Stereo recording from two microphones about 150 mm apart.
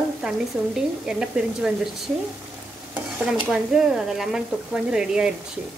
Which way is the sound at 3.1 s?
5° right (ahead or behind).